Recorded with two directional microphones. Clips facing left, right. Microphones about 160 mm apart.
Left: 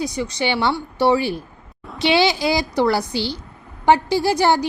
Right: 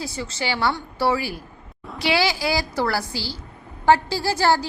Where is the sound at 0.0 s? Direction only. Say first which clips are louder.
Left 6 dB; 20° left (ahead or behind).